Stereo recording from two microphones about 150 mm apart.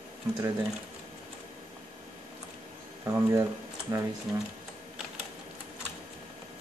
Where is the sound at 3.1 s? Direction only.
20° right (ahead or behind).